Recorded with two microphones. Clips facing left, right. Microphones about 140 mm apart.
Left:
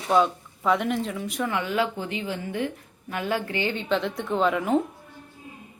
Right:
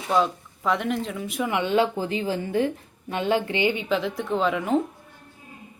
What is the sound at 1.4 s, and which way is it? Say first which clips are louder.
Speech: right 4 dB; 20° right (ahead or behind).